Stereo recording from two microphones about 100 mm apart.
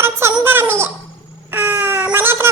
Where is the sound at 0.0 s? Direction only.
25° right (ahead or behind).